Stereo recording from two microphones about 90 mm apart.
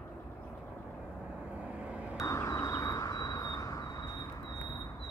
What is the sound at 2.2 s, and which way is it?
Vehicle, 35° left (ahead or behind).